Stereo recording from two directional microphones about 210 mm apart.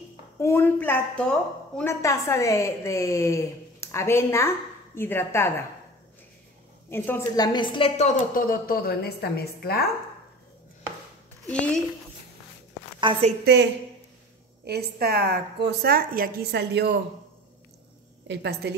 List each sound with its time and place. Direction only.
0.4 s a woman's voice: 10° left (ahead or behind)
6.9 s a woman's voice: 10° left (ahead or behind); by 9.8 s 50° left (ahead or behind)
11.4 s a woman's voice: 5° left (ahead or behind)
13.4 s a woman's voice: 50° right (ahead or behind)
18.2 s a woman's voice: 55° right (ahead or behind)